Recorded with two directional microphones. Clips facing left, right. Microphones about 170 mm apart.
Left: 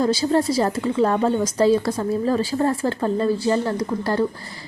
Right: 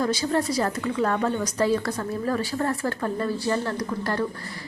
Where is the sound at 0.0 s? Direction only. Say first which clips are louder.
Left 5 dB; 30° left (ahead or behind).